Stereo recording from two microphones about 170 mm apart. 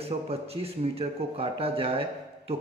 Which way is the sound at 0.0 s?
35° right (ahead or behind).